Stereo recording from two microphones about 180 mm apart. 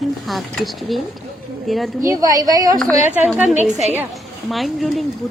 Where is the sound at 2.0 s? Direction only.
20° right (ahead or behind).